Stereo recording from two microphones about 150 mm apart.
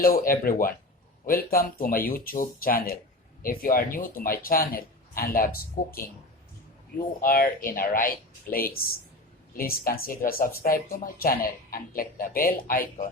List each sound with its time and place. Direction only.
0.0 s speech: 75° left (ahead or behind)
7.2 s speech: 80° left